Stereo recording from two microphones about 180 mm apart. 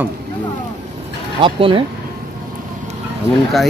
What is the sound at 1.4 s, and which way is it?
Speech, 30° right (ahead or behind).